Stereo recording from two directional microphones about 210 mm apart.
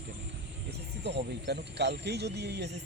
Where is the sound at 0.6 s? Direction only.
55° right (ahead or behind).